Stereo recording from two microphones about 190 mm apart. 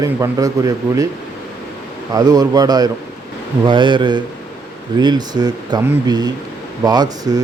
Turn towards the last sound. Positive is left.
turn(degrees=-20)  # may be behind; listen again after turning